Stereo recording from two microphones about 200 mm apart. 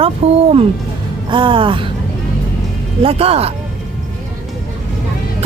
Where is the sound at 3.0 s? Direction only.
30° right (ahead or behind).